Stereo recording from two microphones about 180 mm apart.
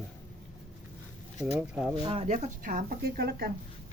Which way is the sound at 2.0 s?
30° right (ahead or behind).